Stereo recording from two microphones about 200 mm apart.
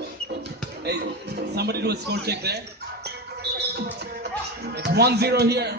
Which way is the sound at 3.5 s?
55° right (ahead or behind).